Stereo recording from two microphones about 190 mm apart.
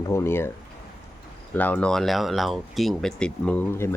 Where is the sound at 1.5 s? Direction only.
10° left (ahead or behind).